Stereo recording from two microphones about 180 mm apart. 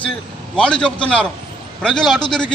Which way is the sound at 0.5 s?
5° left (ahead or behind).